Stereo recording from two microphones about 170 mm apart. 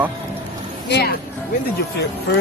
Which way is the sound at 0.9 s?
70° left (ahead or behind).